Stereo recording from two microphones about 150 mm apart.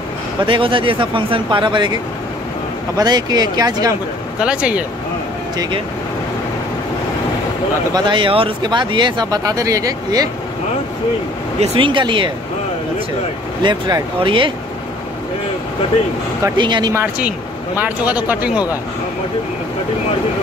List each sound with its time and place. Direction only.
0.5 s speech: 35° right (ahead or behind)
3.0 s speech: 25° right (ahead or behind)
4.4 s speech: 5° right (ahead or behind)
7.9 s speech: 30° right (ahead or behind)
11.6 s speech: 35° right (ahead or behind)
13.6 s speech: 30° right (ahead or behind)
16.5 s speech: 30° right (ahead or behind)
16.9 s speech: 15° right (ahead or behind)